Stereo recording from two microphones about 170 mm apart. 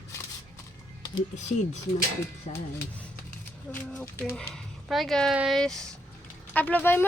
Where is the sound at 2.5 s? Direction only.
40° left (ahead or behind).